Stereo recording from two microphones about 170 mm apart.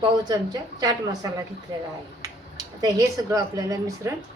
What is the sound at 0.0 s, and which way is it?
A woman's voice, 25° right (ahead or behind).